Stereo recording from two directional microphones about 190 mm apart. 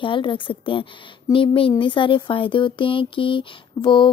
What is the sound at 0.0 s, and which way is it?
Speech, 25° left (ahead or behind).